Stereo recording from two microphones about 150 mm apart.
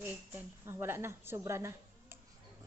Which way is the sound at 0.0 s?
15° right (ahead or behind).